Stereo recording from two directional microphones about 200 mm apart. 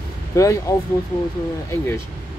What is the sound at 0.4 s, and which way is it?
Speech, 15° left (ahead or behind).